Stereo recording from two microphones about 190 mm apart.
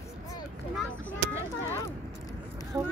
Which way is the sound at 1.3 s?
15° left (ahead or behind).